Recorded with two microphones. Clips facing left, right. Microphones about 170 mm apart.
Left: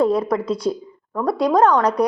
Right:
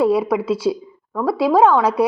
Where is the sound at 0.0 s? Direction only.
5° right (ahead or behind).